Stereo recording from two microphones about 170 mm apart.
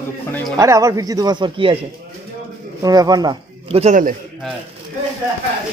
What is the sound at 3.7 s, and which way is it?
Speech, 40° right (ahead or behind).